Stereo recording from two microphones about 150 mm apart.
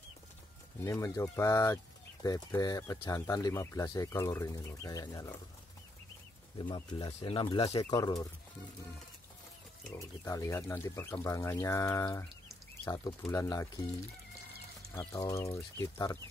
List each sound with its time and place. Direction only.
0.8 s speech: 20° left (ahead or behind)
6.6 s speech: 30° left (ahead or behind)
7.1 s speech: 40° left (ahead or behind)
7.8 s speech: 25° left (ahead or behind)
9.9 s speech: 20° left (ahead or behind)
15.0 s speech: 20° left (ahead or behind)